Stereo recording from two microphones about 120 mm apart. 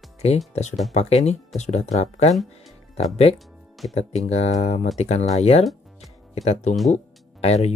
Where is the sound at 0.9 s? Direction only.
65° left (ahead or behind).